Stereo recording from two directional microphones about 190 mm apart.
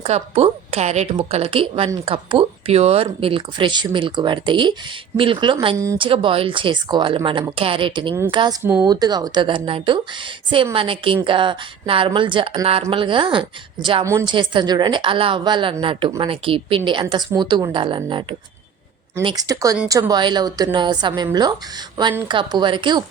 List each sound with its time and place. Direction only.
0.0 s a woman's voice: 30° right (ahead or behind); by 6.0 s 15° right (ahead or behind)
6.0 s speech: 25° right (ahead or behind)
14.0 s speech: 15° right (ahead or behind)